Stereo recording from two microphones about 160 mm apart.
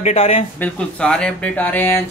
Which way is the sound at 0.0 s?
40° left (ahead or behind).